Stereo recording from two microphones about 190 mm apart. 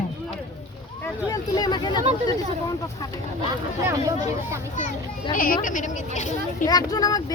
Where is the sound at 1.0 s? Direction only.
20° left (ahead or behind).